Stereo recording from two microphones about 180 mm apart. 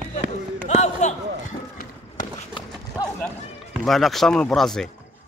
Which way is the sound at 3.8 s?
Centre (ahead or behind).